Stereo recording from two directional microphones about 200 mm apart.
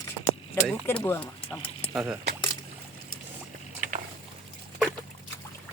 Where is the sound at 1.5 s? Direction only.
5° right (ahead or behind).